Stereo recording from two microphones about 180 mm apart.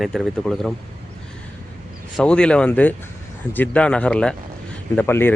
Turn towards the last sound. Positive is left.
turn(degrees=10)  # may be behind; listen again after turning